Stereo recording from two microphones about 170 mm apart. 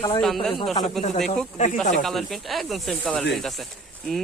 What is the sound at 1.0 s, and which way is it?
Speech, 45° left (ahead or behind).